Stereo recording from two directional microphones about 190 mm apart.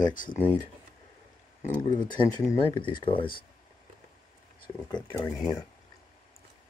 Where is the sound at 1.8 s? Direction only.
25° left (ahead or behind).